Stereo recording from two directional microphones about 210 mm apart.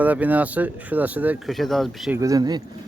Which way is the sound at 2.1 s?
15° right (ahead or behind).